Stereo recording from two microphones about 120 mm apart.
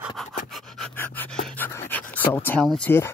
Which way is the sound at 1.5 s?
15° left (ahead or behind).